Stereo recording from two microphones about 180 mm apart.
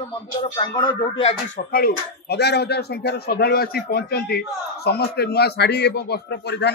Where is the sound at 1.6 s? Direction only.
55° left (ahead or behind).